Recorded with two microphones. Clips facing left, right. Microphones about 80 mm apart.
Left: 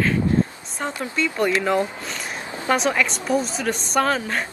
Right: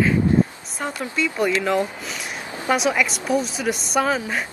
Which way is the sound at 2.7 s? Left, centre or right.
Centre.